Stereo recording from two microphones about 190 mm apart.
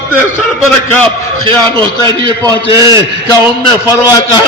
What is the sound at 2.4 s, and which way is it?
Speech, 20° right (ahead or behind).